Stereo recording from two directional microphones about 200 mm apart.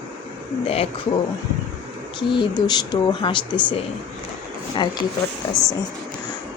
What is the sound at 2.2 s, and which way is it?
Speech, 25° left (ahead or behind).